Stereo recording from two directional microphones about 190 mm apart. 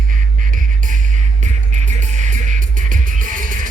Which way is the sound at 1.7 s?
40° right (ahead or behind).